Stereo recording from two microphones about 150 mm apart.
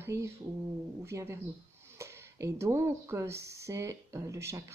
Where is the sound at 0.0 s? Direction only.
20° right (ahead or behind).